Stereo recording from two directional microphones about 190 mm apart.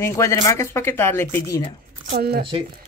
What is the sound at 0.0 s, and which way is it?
Speech, 15° left (ahead or behind).